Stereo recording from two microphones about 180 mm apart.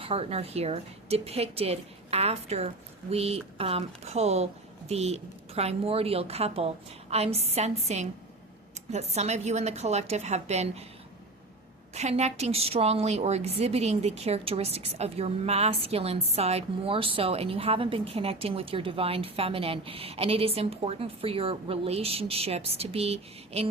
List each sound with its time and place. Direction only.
0.0 s a woman's voice: 35° right (ahead or behind)
11.9 s a woman's voice: 40° right (ahead or behind)